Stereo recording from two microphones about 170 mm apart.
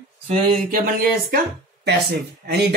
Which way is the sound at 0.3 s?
50° right (ahead or behind).